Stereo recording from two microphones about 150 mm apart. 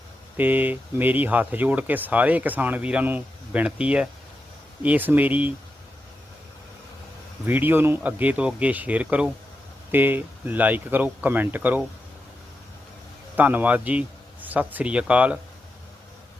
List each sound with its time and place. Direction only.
0.3 s speech: 10° right (ahead or behind)
7.4 s speech: 15° right (ahead or behind)
13.3 s speech: 10° right (ahead or behind)